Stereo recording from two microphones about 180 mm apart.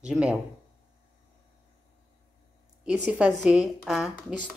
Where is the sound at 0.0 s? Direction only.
5° right (ahead or behind).